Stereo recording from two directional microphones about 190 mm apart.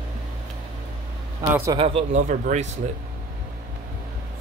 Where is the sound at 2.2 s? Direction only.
40° right (ahead or behind).